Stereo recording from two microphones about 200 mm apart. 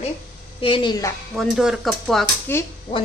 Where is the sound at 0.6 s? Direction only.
25° left (ahead or behind).